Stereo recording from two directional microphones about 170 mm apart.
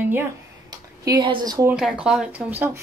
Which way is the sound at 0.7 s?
25° right (ahead or behind).